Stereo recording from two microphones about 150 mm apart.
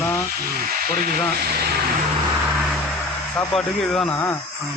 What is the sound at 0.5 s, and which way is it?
Speech, 80° right.